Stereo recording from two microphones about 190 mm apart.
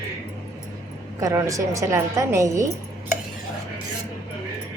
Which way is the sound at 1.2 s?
15° right (ahead or behind).